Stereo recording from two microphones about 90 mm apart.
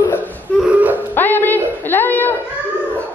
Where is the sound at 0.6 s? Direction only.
15° right (ahead or behind).